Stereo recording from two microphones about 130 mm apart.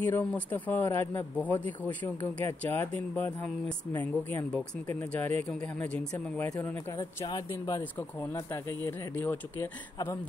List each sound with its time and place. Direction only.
0.0 s speech: 15° left (ahead or behind)
7.2 s speech: 30° left (ahead or behind)